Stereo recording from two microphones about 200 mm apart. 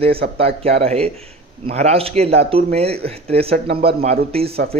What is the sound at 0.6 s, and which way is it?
A man's voice, 30° right (ahead or behind).